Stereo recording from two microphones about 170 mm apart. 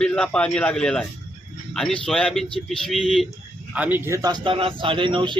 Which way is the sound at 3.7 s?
10° right (ahead or behind).